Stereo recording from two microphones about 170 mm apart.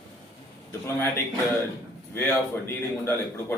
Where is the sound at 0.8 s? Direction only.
10° left (ahead or behind).